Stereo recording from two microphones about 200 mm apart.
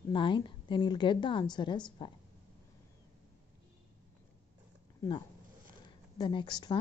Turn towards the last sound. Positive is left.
turn(degrees=20)  # may be behind; listen again after turning